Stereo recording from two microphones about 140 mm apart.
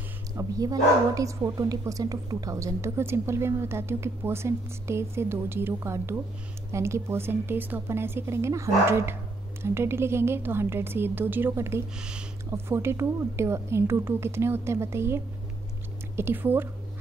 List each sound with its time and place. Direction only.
0.4 s a woman's voice: 25° right (ahead or behind)
12.0 s a woman's voice: 5° right (ahead or behind)
12.4 s a woman's voice: 15° right (ahead or behind)